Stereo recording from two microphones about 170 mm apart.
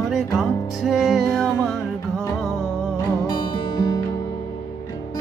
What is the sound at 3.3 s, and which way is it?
Music, 25° left (ahead or behind).